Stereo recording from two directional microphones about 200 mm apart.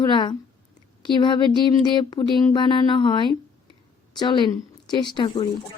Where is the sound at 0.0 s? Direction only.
25° left (ahead or behind).